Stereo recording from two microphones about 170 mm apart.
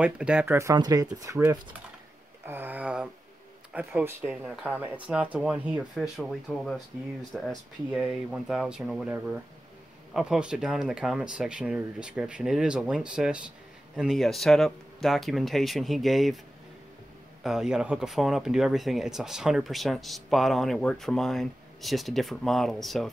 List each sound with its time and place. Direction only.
0.0 s speech: 5° right (ahead or behind)
2.4 s a sound: 10° right (ahead or behind)
3.7 s speech: 10° right (ahead or behind)
17.4 s speech: 5° right (ahead or behind)